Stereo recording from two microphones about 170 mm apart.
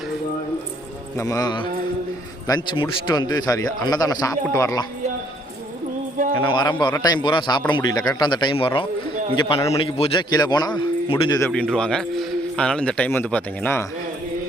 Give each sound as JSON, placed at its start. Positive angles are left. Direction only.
{"t": 1.1, "sound": "a man's voice", "side_deg": 20}
{"t": 6.4, "sound": "a man's voice", "side_deg": 25}
{"t": 9.7, "sound": "a man's voice", "side_deg": 35}
{"t": 11.3, "sound": "a man's voice", "side_deg": 10}